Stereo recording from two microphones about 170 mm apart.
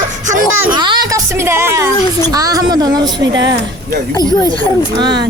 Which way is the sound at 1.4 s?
15° right (ahead or behind).